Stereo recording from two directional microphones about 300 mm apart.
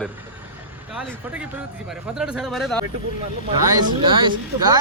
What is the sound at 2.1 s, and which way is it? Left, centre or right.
Speech, centre.